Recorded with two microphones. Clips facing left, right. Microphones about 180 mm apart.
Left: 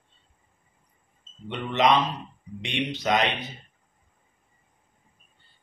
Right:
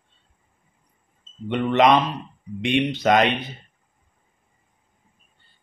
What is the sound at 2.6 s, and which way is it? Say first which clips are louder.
Speech: right 8 dB; 55° right (ahead or behind).